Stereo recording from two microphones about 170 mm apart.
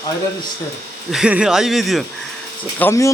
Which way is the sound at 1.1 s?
5° right (ahead or behind).